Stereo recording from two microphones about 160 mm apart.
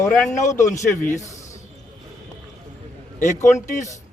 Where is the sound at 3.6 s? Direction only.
50° left (ahead or behind).